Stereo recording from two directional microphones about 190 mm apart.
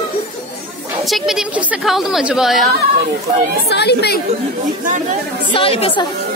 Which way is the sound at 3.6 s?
60° left (ahead or behind).